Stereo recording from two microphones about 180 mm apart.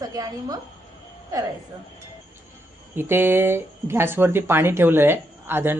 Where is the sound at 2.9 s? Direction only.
10° right (ahead or behind).